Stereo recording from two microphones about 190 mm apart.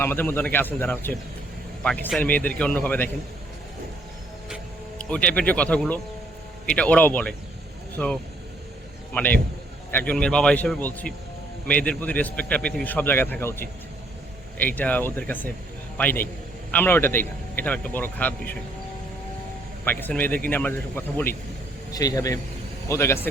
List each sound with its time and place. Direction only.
0.0 s a man's voice: 10° left (ahead or behind)
4.4 s music: centre (ahead or behind)
6.7 s a man's voice: 5° left (ahead or behind)
19.8 s a man's voice: 10° left (ahead or behind)